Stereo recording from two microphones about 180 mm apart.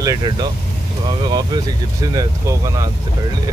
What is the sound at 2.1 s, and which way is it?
Speech, 20° right (ahead or behind).